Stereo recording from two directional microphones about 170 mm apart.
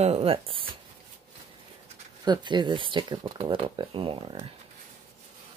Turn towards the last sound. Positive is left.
turn(degrees=-30)  # may be behind; listen again after turning